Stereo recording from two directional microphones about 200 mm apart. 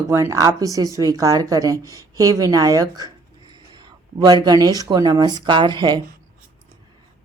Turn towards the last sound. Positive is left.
turn(degrees=-25)  # may be behind; listen again after turning